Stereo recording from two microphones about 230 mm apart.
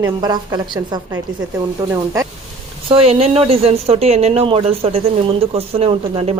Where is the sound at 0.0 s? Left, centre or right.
Centre.